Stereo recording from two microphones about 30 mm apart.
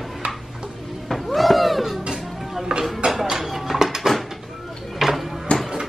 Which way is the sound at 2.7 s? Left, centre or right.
Right.